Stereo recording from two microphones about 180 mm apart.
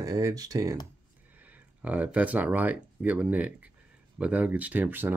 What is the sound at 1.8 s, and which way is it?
Speech, 10° right (ahead or behind).